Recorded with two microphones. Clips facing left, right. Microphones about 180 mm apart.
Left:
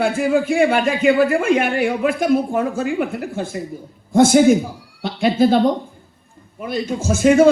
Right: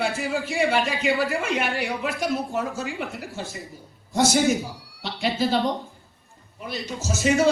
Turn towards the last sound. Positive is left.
turn(degrees=55)  # may be behind; listen again after turning